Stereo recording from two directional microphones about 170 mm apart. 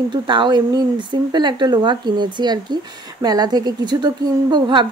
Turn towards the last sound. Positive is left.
turn(degrees=-25)  # may be behind; listen again after turning